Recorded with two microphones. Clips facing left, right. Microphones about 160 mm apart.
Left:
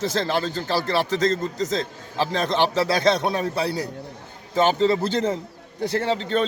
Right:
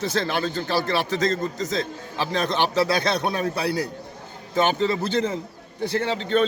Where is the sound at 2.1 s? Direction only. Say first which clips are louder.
Left 2 dB; 35° left (ahead or behind).